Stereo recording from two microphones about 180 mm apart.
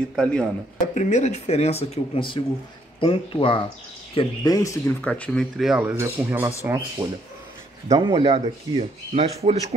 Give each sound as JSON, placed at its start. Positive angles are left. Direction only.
{"t": 0.1, "sound": "speech", "side_deg": 5}
{"t": 0.9, "sound": "speech", "side_deg": 40}
{"t": 4.5, "sound": "speech", "side_deg": 15}
{"t": 7.9, "sound": "speech", "side_deg": -25}